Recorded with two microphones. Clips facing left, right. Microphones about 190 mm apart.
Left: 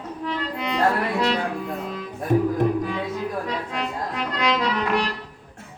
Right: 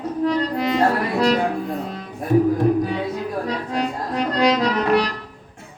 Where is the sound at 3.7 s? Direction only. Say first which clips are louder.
Right 5 dB; 40° right (ahead or behind).